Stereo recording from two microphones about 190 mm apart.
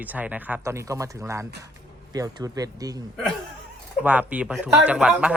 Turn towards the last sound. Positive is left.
turn(degrees=-5)  # may be behind; listen again after turning